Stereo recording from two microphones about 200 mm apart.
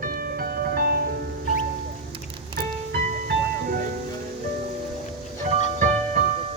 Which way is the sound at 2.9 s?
50° right (ahead or behind).